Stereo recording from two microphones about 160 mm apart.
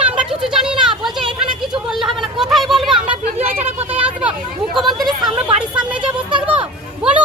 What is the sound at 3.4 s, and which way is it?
Speech, 10° right (ahead or behind).